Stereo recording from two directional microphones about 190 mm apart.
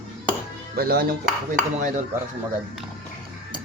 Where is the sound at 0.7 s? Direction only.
55° right (ahead or behind).